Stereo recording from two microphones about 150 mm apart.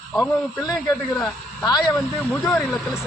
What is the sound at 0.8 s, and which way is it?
Speech, 25° left (ahead or behind).